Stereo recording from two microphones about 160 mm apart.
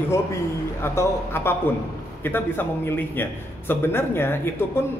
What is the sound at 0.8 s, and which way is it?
A man's voice, 15° left (ahead or behind).